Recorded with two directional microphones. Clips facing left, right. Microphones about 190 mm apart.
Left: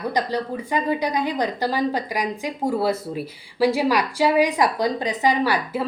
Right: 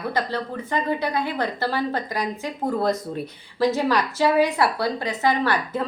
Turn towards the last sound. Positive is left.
turn(degrees=10)  # may be behind; listen again after turning